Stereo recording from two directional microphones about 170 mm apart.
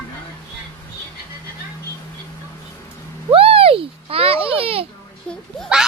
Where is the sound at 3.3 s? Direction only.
35° right (ahead or behind).